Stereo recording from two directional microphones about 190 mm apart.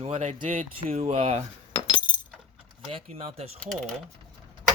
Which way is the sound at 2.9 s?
35° right (ahead or behind).